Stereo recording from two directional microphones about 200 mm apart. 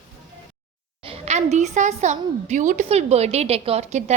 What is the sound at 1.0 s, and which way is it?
A woman's voice, 30° right (ahead or behind).